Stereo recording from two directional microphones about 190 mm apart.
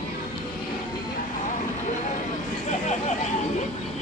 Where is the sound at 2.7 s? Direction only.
35° left (ahead or behind).